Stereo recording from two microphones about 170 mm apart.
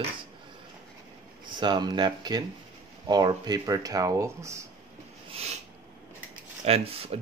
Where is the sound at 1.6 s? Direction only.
25° right (ahead or behind).